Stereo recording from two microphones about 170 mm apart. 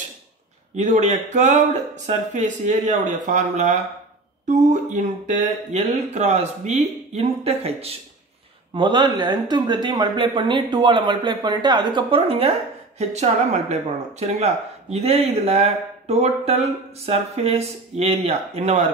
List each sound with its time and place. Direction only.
0.8 s speech: 45° right (ahead or behind)
4.9 s speech: 45° right (ahead or behind)
8.7 s speech: 25° right (ahead or behind); by 18.9 s 40° right (ahead or behind)